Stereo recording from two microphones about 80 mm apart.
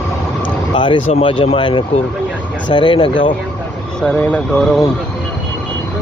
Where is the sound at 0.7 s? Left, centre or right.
Left.